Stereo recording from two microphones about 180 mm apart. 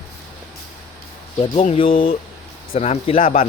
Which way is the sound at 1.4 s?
35° left (ahead or behind).